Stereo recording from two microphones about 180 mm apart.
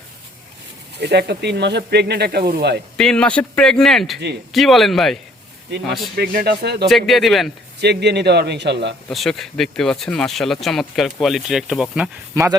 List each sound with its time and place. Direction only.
0.9 s speech: 65° right (ahead or behind)
3.0 s speech: 5° left (ahead or behind)
6.1 s speech: 55° right (ahead or behind)
6.8 s speech: centre (ahead or behind)
7.8 s speech: 70° right (ahead or behind)
9.0 s speech: centre (ahead or behind)
12.3 s speech: 20° right (ahead or behind)